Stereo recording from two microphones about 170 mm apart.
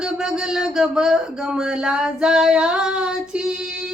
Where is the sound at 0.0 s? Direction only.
5° right (ahead or behind).